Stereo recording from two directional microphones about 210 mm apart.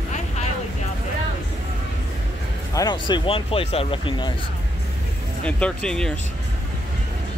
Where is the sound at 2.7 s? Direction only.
20° left (ahead or behind).